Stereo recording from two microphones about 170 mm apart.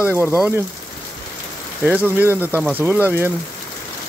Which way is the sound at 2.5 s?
10° right (ahead or behind).